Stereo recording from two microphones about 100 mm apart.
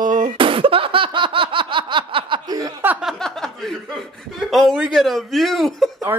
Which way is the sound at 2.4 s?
40° right (ahead or behind).